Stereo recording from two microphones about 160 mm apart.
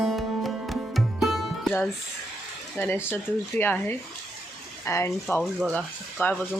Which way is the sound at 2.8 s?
15° left (ahead or behind).